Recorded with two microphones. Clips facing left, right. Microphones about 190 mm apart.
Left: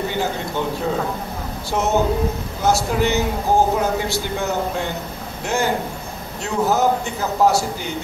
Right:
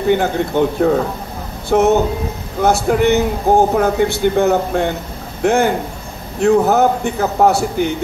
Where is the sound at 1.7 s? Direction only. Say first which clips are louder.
Right 6 dB; 60° right (ahead or behind).